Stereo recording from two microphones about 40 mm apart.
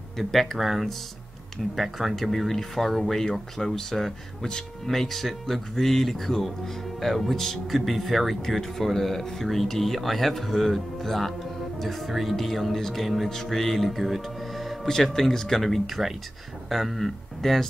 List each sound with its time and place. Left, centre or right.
0.2 s speech: centre
2.1 s speech: centre
4.9 s speech: centre
14.9 s speech: centre